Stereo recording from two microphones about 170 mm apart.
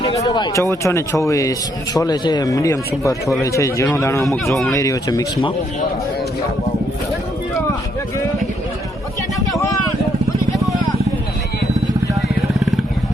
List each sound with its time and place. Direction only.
0.0 s a sound: 35° left (ahead or behind)
0.3 s a man's voice: 25° left (ahead or behind)
10.4 s vehicle: 20° left (ahead or behind)